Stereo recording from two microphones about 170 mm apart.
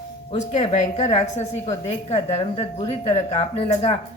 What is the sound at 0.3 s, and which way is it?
A woman's voice, 45° left (ahead or behind).